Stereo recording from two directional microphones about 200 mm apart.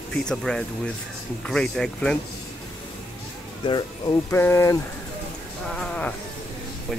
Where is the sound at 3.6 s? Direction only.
20° left (ahead or behind).